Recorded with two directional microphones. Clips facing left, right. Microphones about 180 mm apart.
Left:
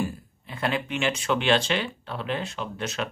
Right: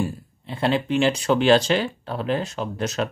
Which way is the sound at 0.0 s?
30° right (ahead or behind).